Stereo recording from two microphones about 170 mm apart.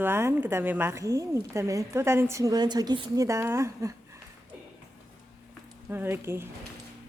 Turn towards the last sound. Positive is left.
turn(degrees=-15)  # may be behind; listen again after turning